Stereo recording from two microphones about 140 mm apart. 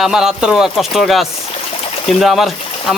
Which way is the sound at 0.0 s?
5° right (ahead or behind).